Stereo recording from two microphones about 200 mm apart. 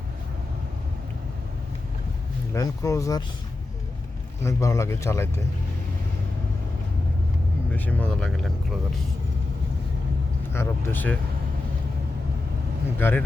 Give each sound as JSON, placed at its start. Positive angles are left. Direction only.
{"t": 2.5, "sound": "speech", "side_deg": 15}
{"t": 4.4, "sound": "speech", "side_deg": 15}
{"t": 7.7, "sound": "speech", "side_deg": 10}
{"t": 10.5, "sound": "speech", "side_deg": 10}
{"t": 13.0, "sound": "speech", "side_deg": 10}